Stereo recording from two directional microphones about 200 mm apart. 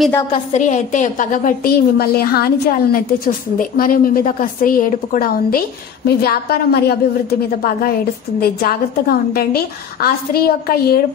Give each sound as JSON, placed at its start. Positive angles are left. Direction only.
{"t": 0.3, "sound": "a woman's voice", "side_deg": 35}